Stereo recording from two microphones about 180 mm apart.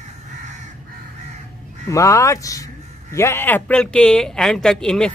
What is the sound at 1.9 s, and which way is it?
Speech, 15° left (ahead or behind).